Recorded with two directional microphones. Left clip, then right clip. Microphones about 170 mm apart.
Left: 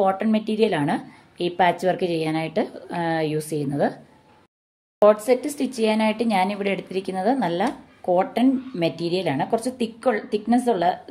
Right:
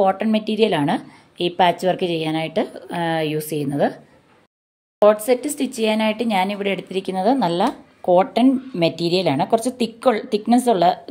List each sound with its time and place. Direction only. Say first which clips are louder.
0.0 s a woman's voice: right 3 dB; 20° right (ahead or behind); by 11.0 s 35° right (ahead or behind)